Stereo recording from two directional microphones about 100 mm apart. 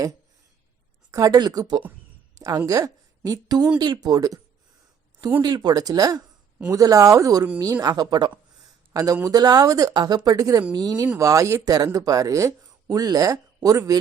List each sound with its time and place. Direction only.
1.1 s a woman's voice: 40° right (ahead or behind)
5.4 s speech: 45° right (ahead or behind)